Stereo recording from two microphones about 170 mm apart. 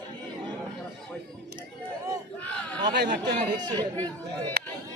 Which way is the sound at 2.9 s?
80° right.